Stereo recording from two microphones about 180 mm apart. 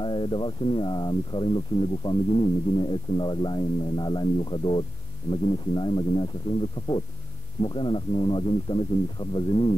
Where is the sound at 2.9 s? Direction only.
25° left (ahead or behind).